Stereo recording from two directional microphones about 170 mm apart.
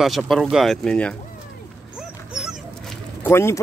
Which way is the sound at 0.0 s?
Centre (ahead or behind).